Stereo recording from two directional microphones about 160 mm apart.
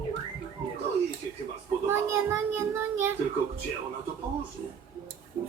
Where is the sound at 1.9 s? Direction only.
15° right (ahead or behind).